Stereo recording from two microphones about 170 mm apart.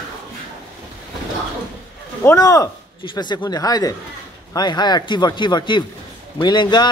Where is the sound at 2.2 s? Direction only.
20° left (ahead or behind).